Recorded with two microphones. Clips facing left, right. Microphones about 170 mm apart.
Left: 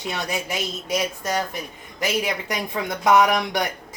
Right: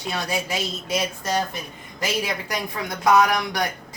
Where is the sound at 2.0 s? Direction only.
20° left (ahead or behind).